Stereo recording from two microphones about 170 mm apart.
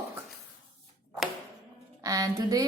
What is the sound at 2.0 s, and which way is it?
Speech, 20° right (ahead or behind).